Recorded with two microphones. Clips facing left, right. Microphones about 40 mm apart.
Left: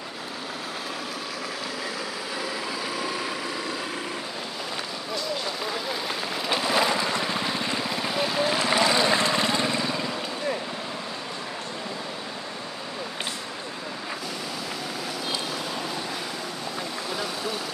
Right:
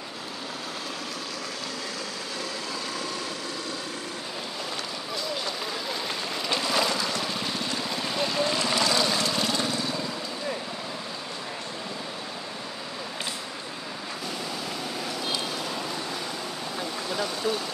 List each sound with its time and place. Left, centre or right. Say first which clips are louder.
5.9 s vehicle: left 2 dB; centre; by 9.9 s left
17.1 s vehicle: right 4 dB; centre